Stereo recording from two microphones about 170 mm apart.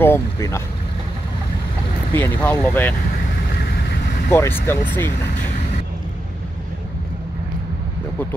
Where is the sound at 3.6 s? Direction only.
70° left (ahead or behind).